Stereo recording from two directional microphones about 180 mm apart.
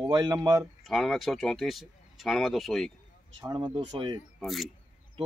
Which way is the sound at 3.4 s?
25° right (ahead or behind).